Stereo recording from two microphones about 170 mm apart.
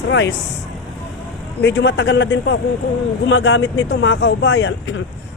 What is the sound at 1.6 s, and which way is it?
Speech, 90° left.